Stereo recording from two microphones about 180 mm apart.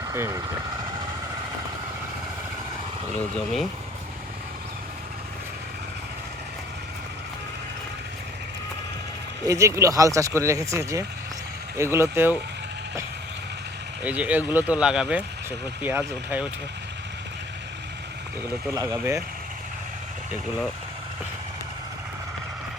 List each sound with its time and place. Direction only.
0.1 s speech: 15° right (ahead or behind)
3.3 s speech: centre (ahead or behind)
9.5 s speech: 15° right (ahead or behind)
14.0 s speech: 10° right (ahead or behind)
18.7 s speech: 15° right (ahead or behind)